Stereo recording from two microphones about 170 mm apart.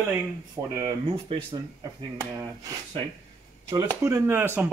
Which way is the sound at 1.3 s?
30° right (ahead or behind).